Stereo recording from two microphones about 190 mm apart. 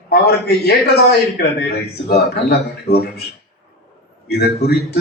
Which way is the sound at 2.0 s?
55° left (ahead or behind).